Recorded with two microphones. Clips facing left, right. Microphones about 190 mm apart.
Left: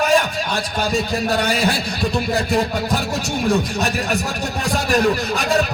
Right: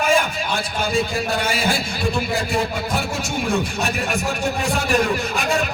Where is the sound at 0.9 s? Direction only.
35° left (ahead or behind).